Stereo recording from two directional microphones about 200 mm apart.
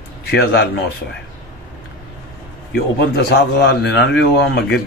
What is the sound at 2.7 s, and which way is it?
A man's voice, 55° left (ahead or behind).